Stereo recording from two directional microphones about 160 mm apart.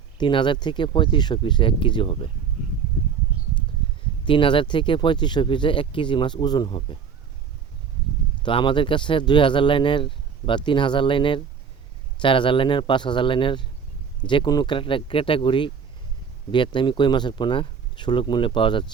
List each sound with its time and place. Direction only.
0.2 s speech: 30° left (ahead or behind)
4.3 s speech: 30° left (ahead or behind)
8.4 s speech: 30° left (ahead or behind)